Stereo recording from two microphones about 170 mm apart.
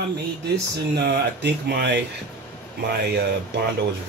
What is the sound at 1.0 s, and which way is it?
Speech, 75° right (ahead or behind).